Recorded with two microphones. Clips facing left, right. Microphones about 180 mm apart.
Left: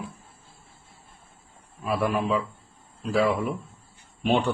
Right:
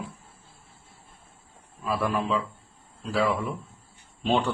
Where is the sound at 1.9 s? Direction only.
15° left (ahead or behind).